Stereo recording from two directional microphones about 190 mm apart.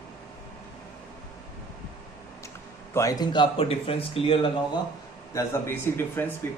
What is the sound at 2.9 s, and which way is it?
Speech, 20° left (ahead or behind).